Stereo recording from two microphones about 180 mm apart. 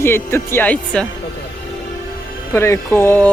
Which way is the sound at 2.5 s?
15° left (ahead or behind).